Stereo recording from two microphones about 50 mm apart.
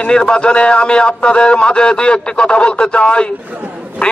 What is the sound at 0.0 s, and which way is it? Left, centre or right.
Speech, centre.